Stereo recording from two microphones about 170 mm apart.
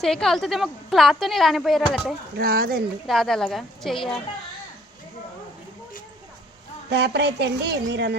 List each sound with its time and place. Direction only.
0.0 s a woman's voice: centre (ahead or behind)
2.4 s speech: 65° right (ahead or behind)
3.1 s a woman's voice: centre (ahead or behind)
6.9 s speech: 85° right